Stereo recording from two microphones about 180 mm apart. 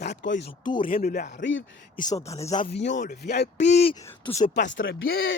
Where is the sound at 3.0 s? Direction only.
60° left (ahead or behind).